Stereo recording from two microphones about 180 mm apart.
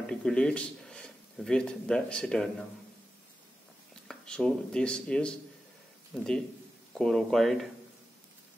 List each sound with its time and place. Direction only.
0.0 s speech: 5° left (ahead or behind)
4.1 s speech: 5° left (ahead or behind)